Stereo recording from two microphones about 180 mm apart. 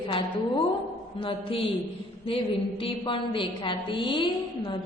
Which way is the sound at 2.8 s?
25° left (ahead or behind).